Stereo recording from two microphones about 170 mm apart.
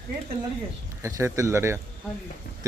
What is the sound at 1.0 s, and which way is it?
Speech, 15° right (ahead or behind).